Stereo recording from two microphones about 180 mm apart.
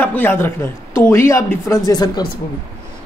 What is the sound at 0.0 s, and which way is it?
A man's voice, 10° left (ahead or behind).